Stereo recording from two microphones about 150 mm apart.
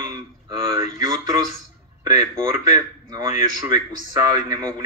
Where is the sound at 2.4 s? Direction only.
50° left (ahead or behind).